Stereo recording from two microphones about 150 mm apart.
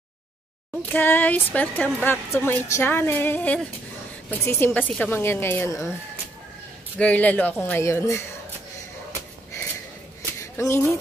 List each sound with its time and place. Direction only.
0.8 s a woman's voice: 15° left (ahead or behind)
7.0 s a woman's voice: 10° left (ahead or behind)
10.6 s speech: 20° left (ahead or behind)